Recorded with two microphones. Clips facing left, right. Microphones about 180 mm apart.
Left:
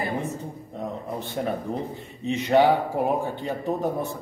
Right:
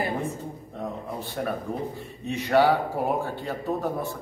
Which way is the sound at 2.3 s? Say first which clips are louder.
Left 2 dB; 20° left (ahead or behind).